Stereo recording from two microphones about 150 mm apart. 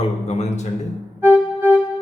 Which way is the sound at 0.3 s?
45° left (ahead or behind).